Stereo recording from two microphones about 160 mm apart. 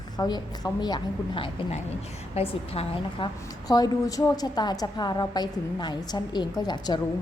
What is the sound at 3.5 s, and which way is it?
A woman's voice, 25° left (ahead or behind).